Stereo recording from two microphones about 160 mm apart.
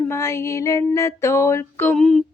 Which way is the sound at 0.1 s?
15° left (ahead or behind).